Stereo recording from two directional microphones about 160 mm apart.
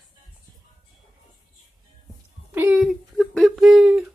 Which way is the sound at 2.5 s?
10° right (ahead or behind).